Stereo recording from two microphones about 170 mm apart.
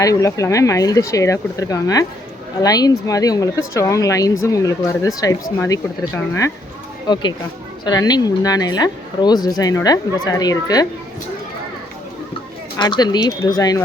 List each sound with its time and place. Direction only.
0.0 s speech: 20° left (ahead or behind)
12.7 s speech: 25° left (ahead or behind)